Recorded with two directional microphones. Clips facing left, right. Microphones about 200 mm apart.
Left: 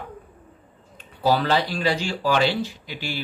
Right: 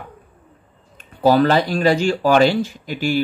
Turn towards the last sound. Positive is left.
turn(degrees=-50)  # may be behind; listen again after turning